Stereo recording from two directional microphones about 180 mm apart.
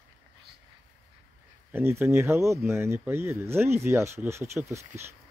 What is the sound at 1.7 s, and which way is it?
Speech, 10° right (ahead or behind).